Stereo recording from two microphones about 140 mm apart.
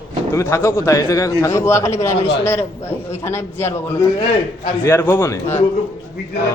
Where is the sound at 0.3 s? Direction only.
20° left (ahead or behind).